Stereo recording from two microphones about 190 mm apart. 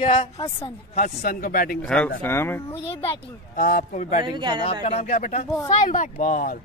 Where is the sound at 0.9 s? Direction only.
40° left (ahead or behind).